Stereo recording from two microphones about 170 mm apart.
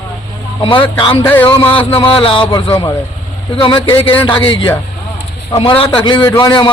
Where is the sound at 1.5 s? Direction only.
30° left (ahead or behind).